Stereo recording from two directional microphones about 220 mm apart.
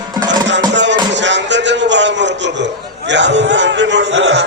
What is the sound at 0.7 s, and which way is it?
A man's voice, 55° right (ahead or behind).